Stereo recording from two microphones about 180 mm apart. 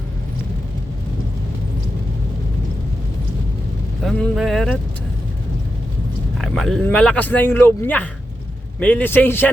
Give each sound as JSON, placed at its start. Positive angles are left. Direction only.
{"t": 4.0, "sound": "speech", "side_deg": 0}
{"t": 6.4, "sound": "speech", "side_deg": 0}